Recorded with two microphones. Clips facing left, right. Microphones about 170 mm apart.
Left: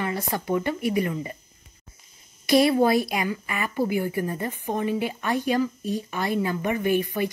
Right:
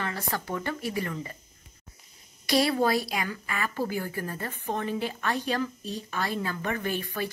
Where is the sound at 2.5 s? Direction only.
15° left (ahead or behind).